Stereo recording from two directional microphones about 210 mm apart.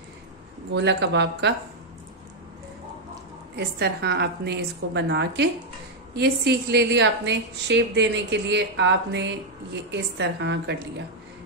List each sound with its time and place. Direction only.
0.7 s a woman's voice: 55° right (ahead or behind)
3.5 s a woman's voice: 50° right (ahead or behind)